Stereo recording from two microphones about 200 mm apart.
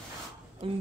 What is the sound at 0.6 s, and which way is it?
Speech, 25° right (ahead or behind).